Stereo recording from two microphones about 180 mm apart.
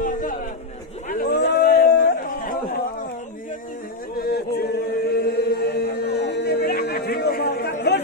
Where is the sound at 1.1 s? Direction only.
50° left (ahead or behind).